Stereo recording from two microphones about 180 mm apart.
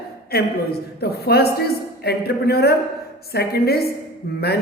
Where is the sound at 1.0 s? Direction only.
60° left (ahead or behind).